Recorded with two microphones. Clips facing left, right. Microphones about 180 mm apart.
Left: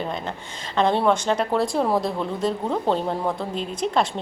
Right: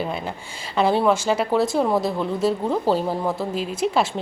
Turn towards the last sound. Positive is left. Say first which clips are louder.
# right 1 dB
turn(degrees=-5)  # may be behind; listen again after turning